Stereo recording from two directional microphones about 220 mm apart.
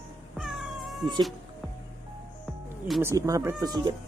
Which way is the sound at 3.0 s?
15° right (ahead or behind).